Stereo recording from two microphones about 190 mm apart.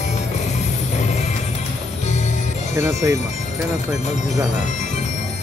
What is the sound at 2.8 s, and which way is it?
Music, 15° right (ahead or behind).